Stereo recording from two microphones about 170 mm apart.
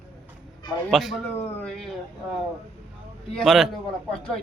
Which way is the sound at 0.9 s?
Centre (ahead or behind).